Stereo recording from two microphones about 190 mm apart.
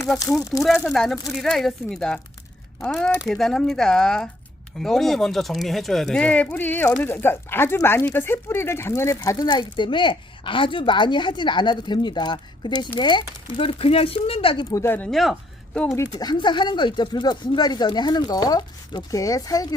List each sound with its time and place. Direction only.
0.0 s speech: 15° left (ahead or behind)
0.6 s speech: centre (ahead or behind)
16.1 s speech: 20° left (ahead or behind)